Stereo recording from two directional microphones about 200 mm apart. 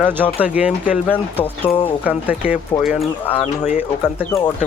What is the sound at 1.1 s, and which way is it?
Speech, 10° left (ahead or behind).